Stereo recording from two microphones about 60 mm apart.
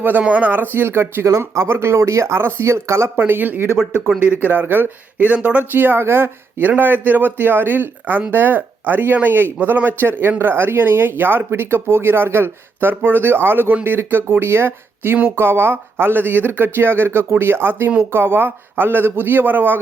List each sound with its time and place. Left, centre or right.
0.0 s speech: right
0.5 s a man's voice: right
3.2 s a man's voice: right
5.7 s a man's voice: right